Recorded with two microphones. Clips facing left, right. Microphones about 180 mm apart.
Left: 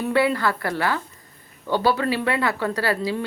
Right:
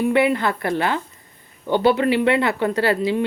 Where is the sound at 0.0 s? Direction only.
20° right (ahead or behind).